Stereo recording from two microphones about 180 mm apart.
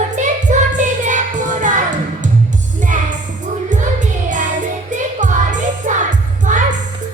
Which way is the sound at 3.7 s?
45° right (ahead or behind).